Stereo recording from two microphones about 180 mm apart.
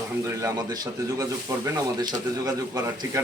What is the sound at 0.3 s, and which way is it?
Speech, 20° right (ahead or behind).